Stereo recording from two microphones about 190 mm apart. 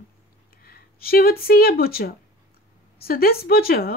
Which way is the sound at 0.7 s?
50° left (ahead or behind).